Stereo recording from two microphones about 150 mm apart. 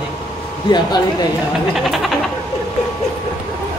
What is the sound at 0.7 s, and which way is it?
Speech, 30° left (ahead or behind).